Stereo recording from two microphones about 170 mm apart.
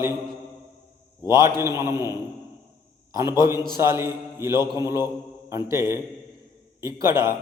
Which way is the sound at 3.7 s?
15° right (ahead or behind).